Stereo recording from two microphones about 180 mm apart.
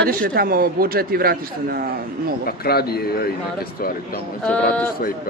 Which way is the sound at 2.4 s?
60° left (ahead or behind).